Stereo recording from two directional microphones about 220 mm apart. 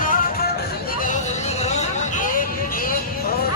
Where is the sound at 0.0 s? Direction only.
40° left (ahead or behind).